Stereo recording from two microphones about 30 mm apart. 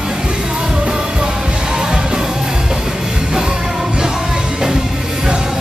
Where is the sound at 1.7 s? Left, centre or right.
Centre.